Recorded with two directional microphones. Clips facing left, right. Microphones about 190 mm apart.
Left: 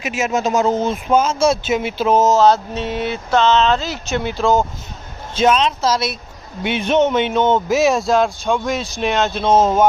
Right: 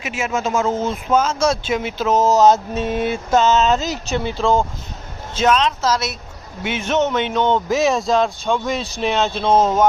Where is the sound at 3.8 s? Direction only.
40° right (ahead or behind).